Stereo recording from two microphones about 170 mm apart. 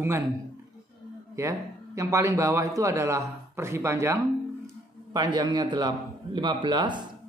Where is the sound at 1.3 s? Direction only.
20° right (ahead or behind).